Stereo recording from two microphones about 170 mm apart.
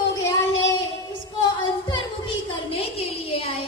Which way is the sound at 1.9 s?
25° left (ahead or behind).